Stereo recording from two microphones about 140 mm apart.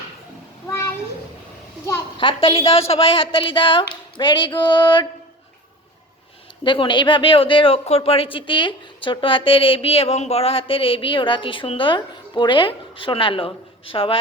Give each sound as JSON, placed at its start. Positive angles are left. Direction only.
{"t": 0.7, "sound": "a sound", "side_deg": 20}
{"t": 2.1, "sound": "a woman's voice", "side_deg": 40}
{"t": 6.7, "sound": "a woman's voice", "side_deg": 35}